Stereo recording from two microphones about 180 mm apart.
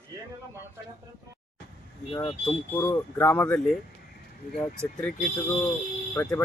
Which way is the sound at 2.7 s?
15° left (ahead or behind).